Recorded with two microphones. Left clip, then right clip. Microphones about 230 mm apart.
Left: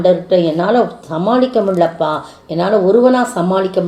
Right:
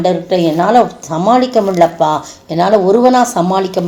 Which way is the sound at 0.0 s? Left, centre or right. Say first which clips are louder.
Left 1 dB; right.